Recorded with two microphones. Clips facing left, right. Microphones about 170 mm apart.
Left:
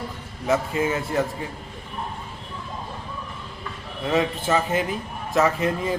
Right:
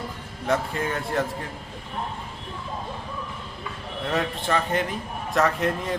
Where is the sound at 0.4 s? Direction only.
5° left (ahead or behind).